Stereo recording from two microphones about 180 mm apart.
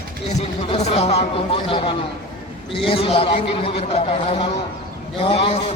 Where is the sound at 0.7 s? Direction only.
35° left (ahead or behind).